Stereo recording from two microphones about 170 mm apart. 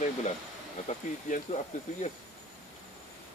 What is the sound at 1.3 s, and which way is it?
Speech, 45° left (ahead or behind).